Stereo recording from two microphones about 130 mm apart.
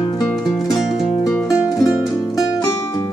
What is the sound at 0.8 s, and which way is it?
Music, centre (ahead or behind).